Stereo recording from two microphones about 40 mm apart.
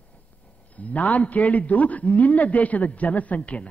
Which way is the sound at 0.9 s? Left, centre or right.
Left.